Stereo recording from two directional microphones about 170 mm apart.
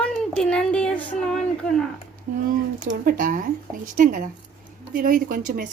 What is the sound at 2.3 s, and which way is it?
Speech, 50° right (ahead or behind).